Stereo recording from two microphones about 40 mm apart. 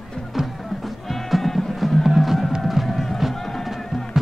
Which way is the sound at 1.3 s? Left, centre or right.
Centre.